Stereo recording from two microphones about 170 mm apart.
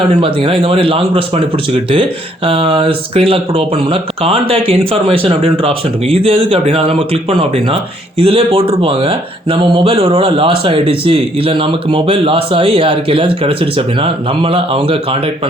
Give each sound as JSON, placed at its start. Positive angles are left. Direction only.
{"t": 0.2, "sound": "speech", "side_deg": -30}